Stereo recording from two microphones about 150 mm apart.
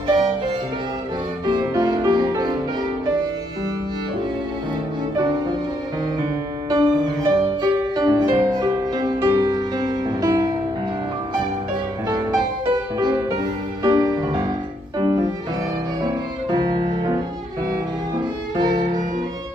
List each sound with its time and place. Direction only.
0.0 s music: 30° right (ahead or behind)
1.4 s music: 30° right (ahead or behind)
6.7 s music: 25° right (ahead or behind)
12.1 s music: 25° right (ahead or behind)
13.8 s music: 25° right (ahead or behind)
18.6 s violin: 25° right (ahead or behind)